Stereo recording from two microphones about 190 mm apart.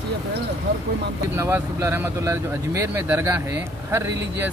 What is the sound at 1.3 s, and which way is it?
Speech, 15° right (ahead or behind).